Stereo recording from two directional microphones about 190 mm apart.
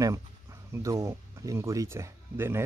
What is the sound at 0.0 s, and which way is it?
Speech, 15° right (ahead or behind).